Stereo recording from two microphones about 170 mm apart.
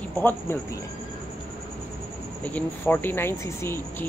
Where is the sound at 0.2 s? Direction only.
10° left (ahead or behind).